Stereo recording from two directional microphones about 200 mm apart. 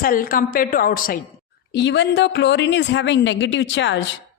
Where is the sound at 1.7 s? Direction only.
60° left (ahead or behind).